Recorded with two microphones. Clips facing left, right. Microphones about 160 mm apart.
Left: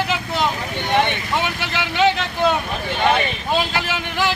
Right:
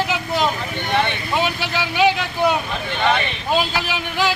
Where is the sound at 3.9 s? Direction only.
15° right (ahead or behind).